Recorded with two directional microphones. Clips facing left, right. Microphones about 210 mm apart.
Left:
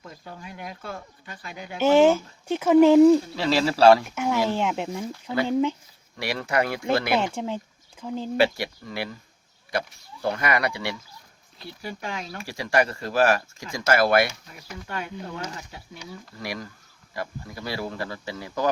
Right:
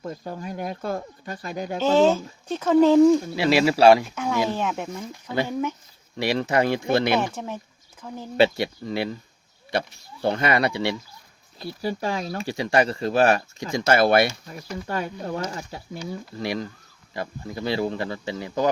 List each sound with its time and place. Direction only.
0.0 s speech: 45° right (ahead or behind)
2.5 s speech: 10° left (ahead or behind)
3.3 s speech: 10° right (ahead or behind)
4.1 s speech: 10° left (ahead or behind)
6.1 s speech: 20° right (ahead or behind)
7.3 s speech: 15° left (ahead or behind)
8.4 s speech: 25° right (ahead or behind)
11.6 s speech: 35° right (ahead or behind)
12.4 s speech: 25° right (ahead or behind)
14.8 s speech: 40° right (ahead or behind)
16.4 s speech: 25° right (ahead or behind)